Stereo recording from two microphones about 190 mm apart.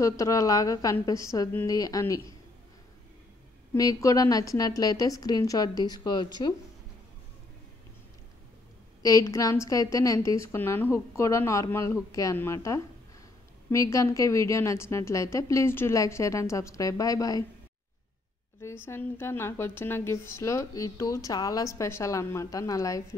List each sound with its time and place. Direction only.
0.0 s a woman's voice: 15° left (ahead or behind)
3.7 s a woman's voice: 20° left (ahead or behind)
9.0 s a woman's voice: 15° left (ahead or behind)
18.6 s a woman's voice: 15° left (ahead or behind)